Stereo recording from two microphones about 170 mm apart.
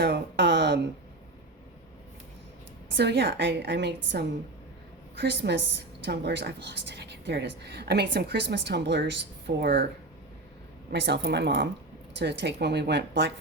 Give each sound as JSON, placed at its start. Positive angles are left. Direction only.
{"t": 0.0, "sound": "speech", "side_deg": -85}
{"t": 2.9, "sound": "a woman's voice", "side_deg": -80}
{"t": 9.6, "sound": "speech", "side_deg": -70}
{"t": 10.9, "sound": "a woman's voice", "side_deg": -90}